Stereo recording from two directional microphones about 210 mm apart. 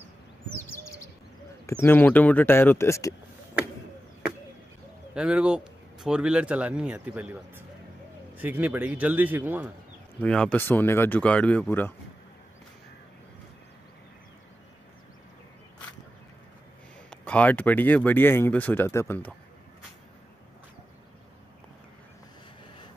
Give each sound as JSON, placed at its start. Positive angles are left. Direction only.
{"t": 1.7, "sound": "speech", "side_deg": 10}
{"t": 5.1, "sound": "a man's voice", "side_deg": -5}
{"t": 10.2, "sound": "speech", "side_deg": 5}
{"t": 17.1, "sound": "speech", "side_deg": 5}